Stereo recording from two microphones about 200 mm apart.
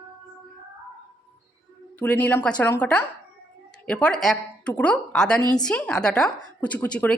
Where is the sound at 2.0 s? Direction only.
10° left (ahead or behind).